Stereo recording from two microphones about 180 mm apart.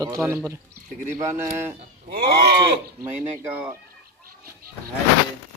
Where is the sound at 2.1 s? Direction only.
65° right (ahead or behind).